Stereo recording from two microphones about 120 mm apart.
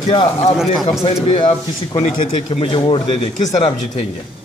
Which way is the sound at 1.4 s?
40° left (ahead or behind).